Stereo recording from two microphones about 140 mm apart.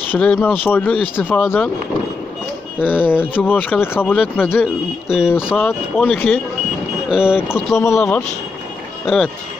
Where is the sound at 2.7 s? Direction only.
15° left (ahead or behind).